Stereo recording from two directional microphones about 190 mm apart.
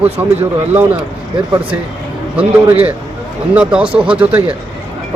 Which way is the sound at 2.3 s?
10° right (ahead or behind).